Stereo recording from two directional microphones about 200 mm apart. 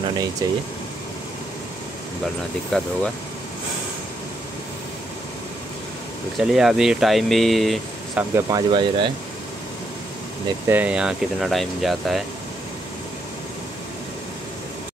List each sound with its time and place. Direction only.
0.4 s speech: 20° right (ahead or behind)
2.7 s speech: 5° left (ahead or behind)
6.3 s speech: centre (ahead or behind)
8.4 s speech: 20° right (ahead or behind)
10.7 s speech: 5° right (ahead or behind)